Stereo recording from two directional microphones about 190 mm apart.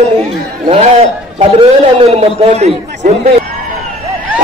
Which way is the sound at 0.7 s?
35° right (ahead or behind).